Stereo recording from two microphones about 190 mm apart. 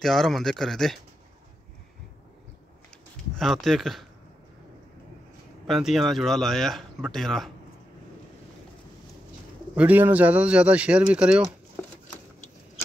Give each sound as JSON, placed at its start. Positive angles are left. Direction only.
{"t": 0.0, "sound": "speech", "side_deg": 0}
{"t": 3.3, "sound": "speech", "side_deg": 0}
{"t": 5.7, "sound": "speech", "side_deg": 0}
{"t": 9.8, "sound": "speech", "side_deg": -10}